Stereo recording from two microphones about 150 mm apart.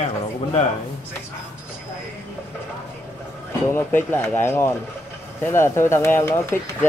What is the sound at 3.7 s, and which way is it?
Speech, 15° left (ahead or behind).